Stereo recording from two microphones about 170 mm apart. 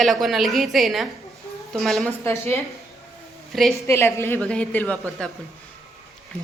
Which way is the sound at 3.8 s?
15° left (ahead or behind).